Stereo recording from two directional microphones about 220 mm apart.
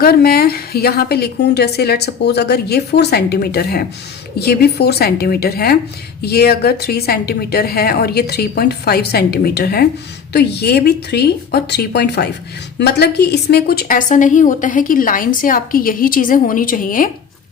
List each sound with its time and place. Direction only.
0.0 s a woman's voice: 45° left (ahead or behind)